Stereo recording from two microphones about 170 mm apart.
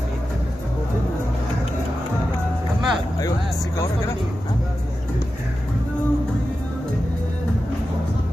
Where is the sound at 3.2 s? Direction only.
20° left (ahead or behind).